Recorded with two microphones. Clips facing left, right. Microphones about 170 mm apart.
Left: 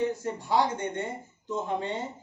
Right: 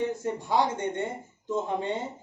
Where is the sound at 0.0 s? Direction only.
20° right (ahead or behind).